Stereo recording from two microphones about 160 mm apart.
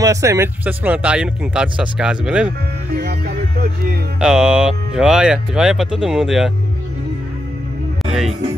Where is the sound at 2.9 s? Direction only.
70° right (ahead or behind).